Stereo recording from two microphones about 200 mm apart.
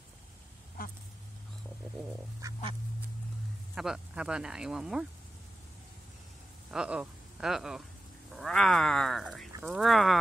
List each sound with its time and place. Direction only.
0.8 s duck: 45° left (ahead or behind)
3.7 s speech: 5° right (ahead or behind)
6.7 s speech: 5° right (ahead or behind)